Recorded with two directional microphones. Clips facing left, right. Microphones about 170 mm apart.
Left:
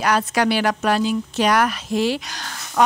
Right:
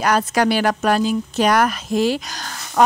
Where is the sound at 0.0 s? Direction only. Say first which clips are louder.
Right 2 dB; 45° right (ahead or behind).